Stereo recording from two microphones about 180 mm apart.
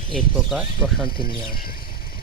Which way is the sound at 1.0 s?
55° left (ahead or behind).